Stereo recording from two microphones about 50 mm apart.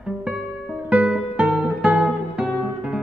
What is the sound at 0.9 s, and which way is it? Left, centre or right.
Music, centre.